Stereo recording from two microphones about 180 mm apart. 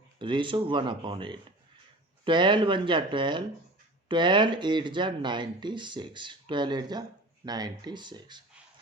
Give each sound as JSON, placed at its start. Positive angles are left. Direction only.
{"t": 0.2, "sound": "speech", "side_deg": -25}